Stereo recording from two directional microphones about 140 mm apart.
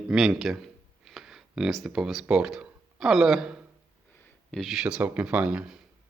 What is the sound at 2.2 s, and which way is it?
Speech, 5° right (ahead or behind).